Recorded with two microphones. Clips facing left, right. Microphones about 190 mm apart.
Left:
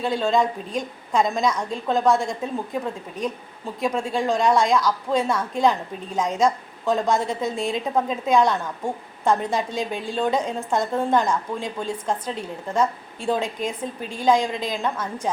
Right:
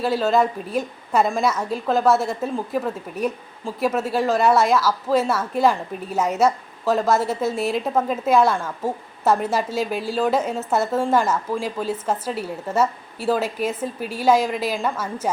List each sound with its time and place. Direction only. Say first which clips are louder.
0.0 s a woman's voice: right 2 dB; 5° right (ahead or behind)